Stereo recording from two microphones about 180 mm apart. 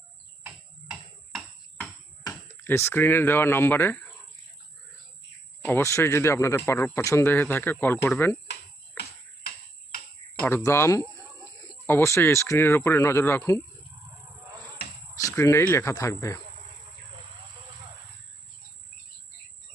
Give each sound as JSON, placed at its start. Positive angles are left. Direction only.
{"t": 0.4, "sound": "tick-tock", "side_deg": -5}
{"t": 1.8, "sound": "a sound", "side_deg": 10}
{"t": 5.6, "sound": "speech", "side_deg": 15}
{"t": 10.4, "sound": "speech", "side_deg": 15}
{"t": 15.3, "sound": "speech", "side_deg": 15}